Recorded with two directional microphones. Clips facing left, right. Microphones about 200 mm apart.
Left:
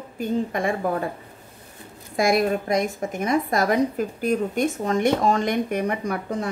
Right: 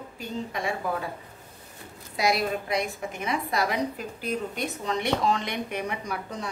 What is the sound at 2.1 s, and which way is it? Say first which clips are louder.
A woman's voice: left 6 dB; 50° left (ahead or behind).